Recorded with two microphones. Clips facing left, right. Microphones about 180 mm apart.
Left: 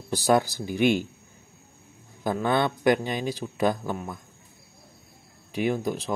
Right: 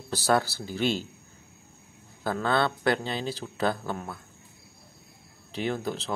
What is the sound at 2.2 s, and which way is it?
Speech, 15° left (ahead or behind).